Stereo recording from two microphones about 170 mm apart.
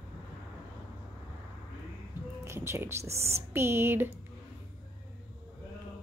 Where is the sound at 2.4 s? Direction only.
15° right (ahead or behind).